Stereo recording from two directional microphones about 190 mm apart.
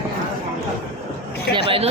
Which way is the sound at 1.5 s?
55° left (ahead or behind).